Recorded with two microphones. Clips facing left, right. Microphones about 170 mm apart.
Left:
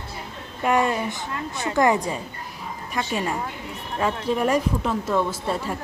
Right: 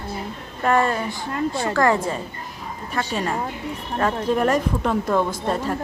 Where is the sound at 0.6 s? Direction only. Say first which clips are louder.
Right 1 dB; 15° left (ahead or behind).